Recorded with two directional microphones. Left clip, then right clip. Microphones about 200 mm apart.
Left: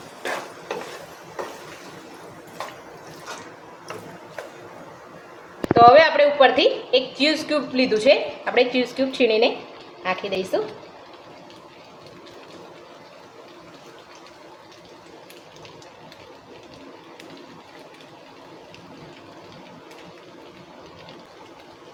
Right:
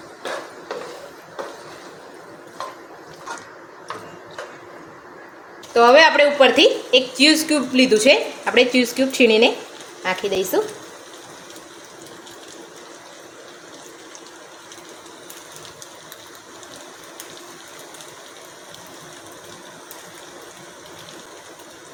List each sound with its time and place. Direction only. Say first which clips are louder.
5.7 s a woman's voice: even; 50° right (ahead or behind)